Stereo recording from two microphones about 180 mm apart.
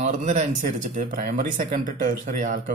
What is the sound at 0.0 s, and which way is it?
A man's voice, 45° right (ahead or behind).